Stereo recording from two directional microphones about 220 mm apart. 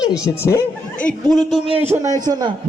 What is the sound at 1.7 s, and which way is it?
Speech, 25° right (ahead or behind).